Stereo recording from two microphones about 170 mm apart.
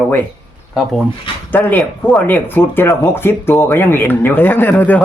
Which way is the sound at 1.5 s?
10° left (ahead or behind).